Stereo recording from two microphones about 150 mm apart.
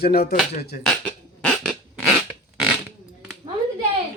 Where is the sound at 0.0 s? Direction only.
90° left.